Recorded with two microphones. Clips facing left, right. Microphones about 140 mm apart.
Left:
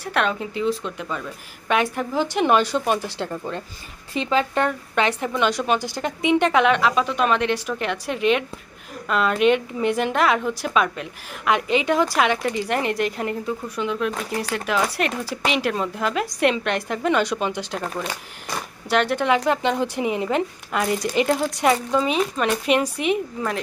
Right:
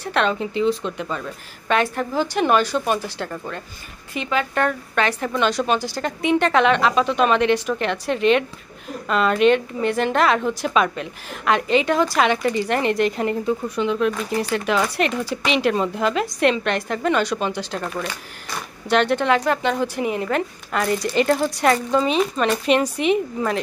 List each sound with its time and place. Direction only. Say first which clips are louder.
0.0 s speech: right 2 dB; 5° left (ahead or behind); by 4.6 s 30° left (ahead or behind)
4.6 s a woman's voice: even; 20° left (ahead or behind)
18.9 s a woman's voice: right 2 dB; 5° left (ahead or behind)